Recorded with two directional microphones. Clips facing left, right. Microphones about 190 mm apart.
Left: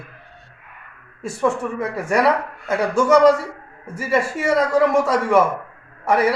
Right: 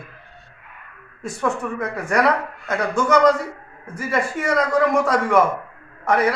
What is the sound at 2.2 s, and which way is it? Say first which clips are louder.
Speech: left 2 dB; 10° left (ahead or behind).